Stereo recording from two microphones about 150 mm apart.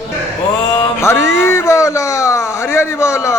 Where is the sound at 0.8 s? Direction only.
20° left (ahead or behind).